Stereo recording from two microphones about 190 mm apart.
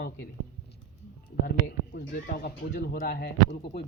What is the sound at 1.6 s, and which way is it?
Speech, 50° left (ahead or behind).